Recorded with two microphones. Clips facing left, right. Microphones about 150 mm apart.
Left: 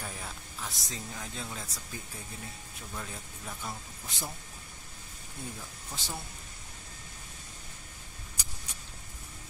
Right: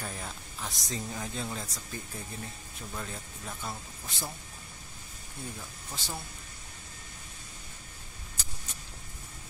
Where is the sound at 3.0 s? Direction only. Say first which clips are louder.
Right 1 dB; 5° right (ahead or behind).